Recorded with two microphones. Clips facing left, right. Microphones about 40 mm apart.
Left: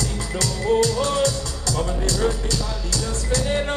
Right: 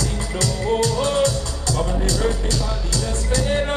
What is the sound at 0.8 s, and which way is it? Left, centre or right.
Music, right.